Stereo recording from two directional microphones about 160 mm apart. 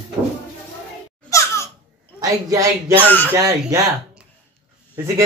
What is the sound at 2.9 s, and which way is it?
Speech, 10° left (ahead or behind).